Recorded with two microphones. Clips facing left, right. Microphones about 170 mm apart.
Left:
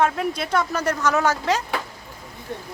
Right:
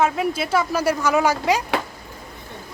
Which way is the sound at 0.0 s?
5° right (ahead or behind).